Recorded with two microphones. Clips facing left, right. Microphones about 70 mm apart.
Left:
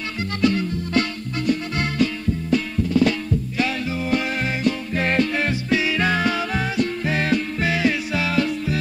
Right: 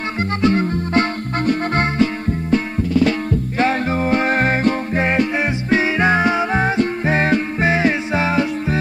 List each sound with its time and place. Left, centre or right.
0.4 s music: right
3.1 s music: right
4.9 s music: right
5.7 s music: right